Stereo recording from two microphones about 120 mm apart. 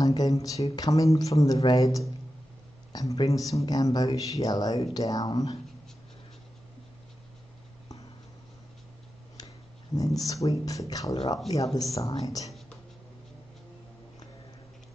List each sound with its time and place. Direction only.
0.0 s speech: 30° left (ahead or behind)
9.9 s speech: 30° left (ahead or behind)